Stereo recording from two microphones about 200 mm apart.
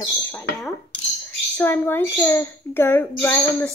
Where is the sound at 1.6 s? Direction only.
10° left (ahead or behind).